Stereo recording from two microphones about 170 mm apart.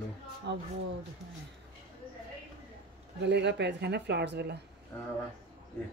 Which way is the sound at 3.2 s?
90° right.